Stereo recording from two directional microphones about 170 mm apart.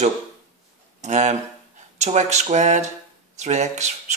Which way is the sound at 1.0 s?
45° right (ahead or behind).